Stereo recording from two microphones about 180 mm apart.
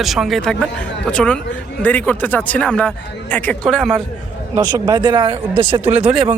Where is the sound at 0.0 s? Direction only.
Centre (ahead or behind).